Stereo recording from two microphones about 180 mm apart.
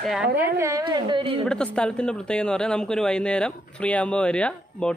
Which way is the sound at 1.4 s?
5° left (ahead or behind).